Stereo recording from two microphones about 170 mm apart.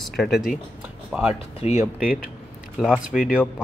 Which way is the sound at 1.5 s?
40° left (ahead or behind).